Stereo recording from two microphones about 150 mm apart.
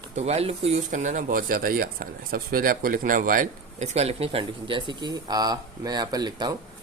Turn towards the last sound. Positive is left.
turn(degrees=-30)  # may be behind; listen again after turning